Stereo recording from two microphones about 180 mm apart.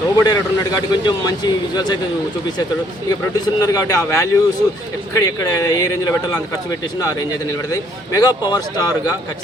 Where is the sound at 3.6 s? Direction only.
20° left (ahead or behind).